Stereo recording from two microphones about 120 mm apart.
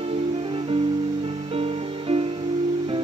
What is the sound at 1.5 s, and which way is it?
Music, 50° right (ahead or behind).